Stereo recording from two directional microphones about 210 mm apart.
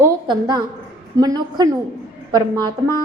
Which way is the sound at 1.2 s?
20° right (ahead or behind).